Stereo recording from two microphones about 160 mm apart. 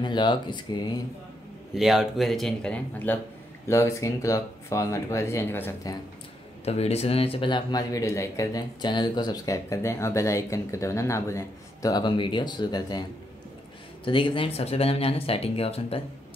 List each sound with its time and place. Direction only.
0.0 s speech: 30° left (ahead or behind)
1.8 s speech: centre (ahead or behind); by 5.9 s 15° left (ahead or behind)
6.6 s speech: 40° left (ahead or behind)
14.0 s speech: 35° left (ahead or behind)